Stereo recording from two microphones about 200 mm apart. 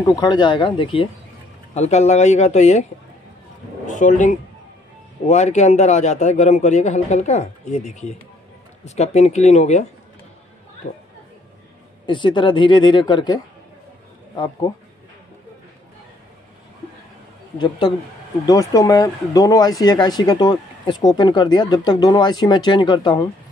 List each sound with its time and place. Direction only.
0.0 s a man's voice: 20° left (ahead or behind)
12.1 s speech: 25° left (ahead or behind)
17.6 s speech: 20° left (ahead or behind)